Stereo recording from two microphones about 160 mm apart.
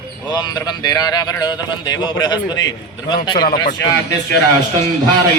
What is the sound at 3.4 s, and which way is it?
Speech, 65° left (ahead or behind).